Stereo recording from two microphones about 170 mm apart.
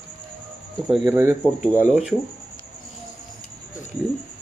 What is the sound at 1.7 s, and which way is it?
Speech, 10° left (ahead or behind).